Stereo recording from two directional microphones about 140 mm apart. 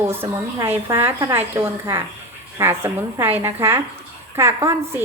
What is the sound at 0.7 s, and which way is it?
A woman's voice, 15° right (ahead or behind).